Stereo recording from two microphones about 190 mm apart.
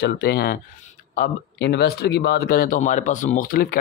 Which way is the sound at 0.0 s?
55° left (ahead or behind).